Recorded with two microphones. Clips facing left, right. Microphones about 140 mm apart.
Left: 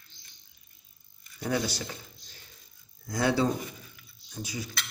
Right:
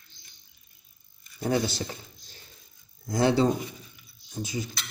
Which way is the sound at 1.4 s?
30° right (ahead or behind).